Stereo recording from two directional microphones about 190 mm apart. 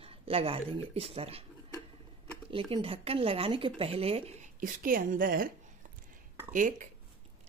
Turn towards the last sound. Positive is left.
turn(degrees=-45)  # may be behind; listen again after turning